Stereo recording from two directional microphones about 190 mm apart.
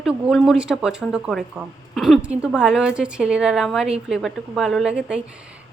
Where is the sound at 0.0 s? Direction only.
Centre (ahead or behind).